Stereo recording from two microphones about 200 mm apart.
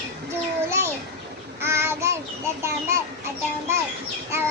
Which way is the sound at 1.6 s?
10° right (ahead or behind).